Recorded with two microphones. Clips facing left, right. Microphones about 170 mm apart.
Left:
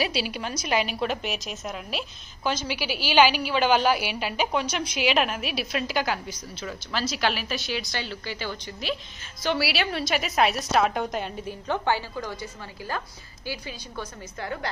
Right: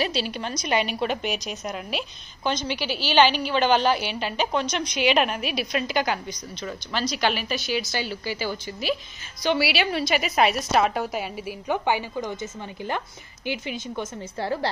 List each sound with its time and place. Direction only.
0.0 s a woman's voice: 10° left (ahead or behind); by 12.4 s 20° right (ahead or behind)
13.5 s a woman's voice: 20° right (ahead or behind)
14.4 s a woman's voice: 30° right (ahead or behind)